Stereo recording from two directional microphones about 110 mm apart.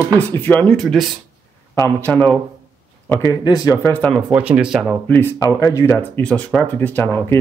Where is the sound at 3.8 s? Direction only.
15° left (ahead or behind).